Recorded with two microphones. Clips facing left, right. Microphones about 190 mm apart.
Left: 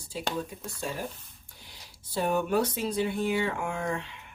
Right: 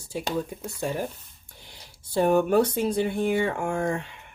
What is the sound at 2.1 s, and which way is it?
Speech, 50° right (ahead or behind).